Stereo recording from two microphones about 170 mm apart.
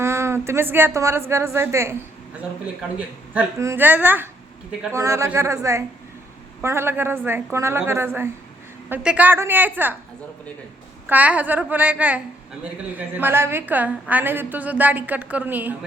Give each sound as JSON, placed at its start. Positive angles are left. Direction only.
{"t": 0.0, "sound": "a woman's voice", "side_deg": -15}
{"t": 3.6, "sound": "a woman's voice", "side_deg": -15}
{"t": 11.0, "sound": "a woman's voice", "side_deg": -10}